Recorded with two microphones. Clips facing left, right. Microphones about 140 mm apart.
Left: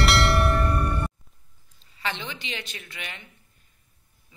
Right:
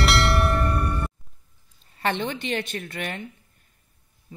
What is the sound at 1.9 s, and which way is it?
A woman's voice, 50° right (ahead or behind).